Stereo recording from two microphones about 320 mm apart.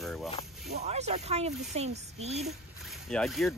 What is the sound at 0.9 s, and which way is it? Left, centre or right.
Speech, centre.